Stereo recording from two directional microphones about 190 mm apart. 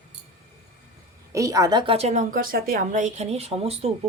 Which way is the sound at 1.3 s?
15° right (ahead or behind).